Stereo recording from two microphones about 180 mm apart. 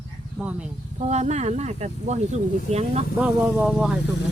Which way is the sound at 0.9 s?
40° right (ahead or behind).